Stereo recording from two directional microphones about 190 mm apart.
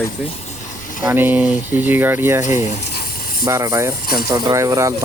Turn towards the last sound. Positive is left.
turn(degrees=-15)  # may be behind; listen again after turning